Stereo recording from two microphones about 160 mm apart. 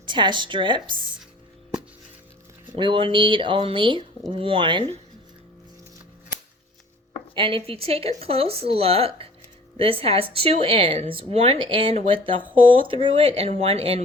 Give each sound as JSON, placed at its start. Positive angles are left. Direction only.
{"t": 0.0, "sound": "a woman's voice", "side_deg": -30}
{"t": 2.7, "sound": "speech", "side_deg": -30}
{"t": 7.3, "sound": "speech", "side_deg": -35}